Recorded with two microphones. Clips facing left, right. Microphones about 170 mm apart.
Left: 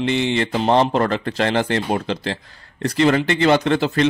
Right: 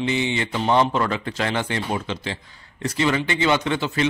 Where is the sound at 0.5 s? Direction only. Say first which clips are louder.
Left 2 dB; 35° left (ahead or behind).